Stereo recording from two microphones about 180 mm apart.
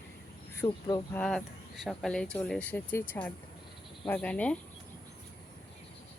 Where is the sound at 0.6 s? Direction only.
25° left (ahead or behind).